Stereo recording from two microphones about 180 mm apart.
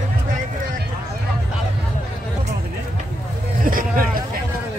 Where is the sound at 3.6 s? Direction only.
50° right (ahead or behind).